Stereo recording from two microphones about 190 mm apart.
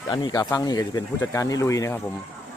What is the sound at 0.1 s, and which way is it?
Speech, 25° left (ahead or behind).